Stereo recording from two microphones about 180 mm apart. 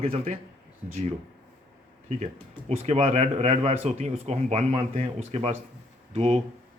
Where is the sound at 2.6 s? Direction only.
35° right (ahead or behind).